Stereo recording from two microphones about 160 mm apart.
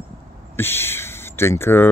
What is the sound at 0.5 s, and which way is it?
Speech, 15° left (ahead or behind).